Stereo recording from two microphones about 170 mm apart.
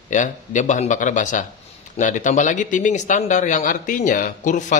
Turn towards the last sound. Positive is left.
turn(degrees=45)  # may be behind; listen again after turning